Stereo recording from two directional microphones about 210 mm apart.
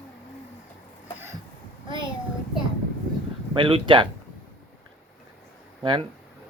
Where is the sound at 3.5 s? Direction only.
25° right (ahead or behind).